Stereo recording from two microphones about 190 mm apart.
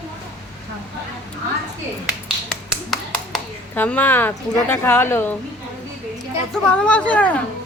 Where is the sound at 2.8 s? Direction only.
5° left (ahead or behind).